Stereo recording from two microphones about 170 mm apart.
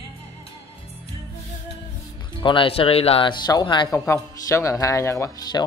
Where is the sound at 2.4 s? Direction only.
30° left (ahead or behind).